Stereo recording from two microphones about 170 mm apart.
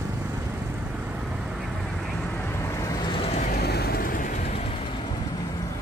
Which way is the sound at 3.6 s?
70° left (ahead or behind).